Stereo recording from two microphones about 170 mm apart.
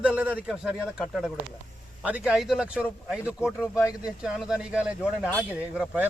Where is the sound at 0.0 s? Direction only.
5° right (ahead or behind).